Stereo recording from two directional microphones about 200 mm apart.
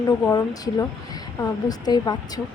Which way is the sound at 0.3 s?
20° left (ahead or behind).